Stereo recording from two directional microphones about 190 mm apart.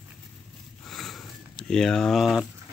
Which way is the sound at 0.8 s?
Centre (ahead or behind).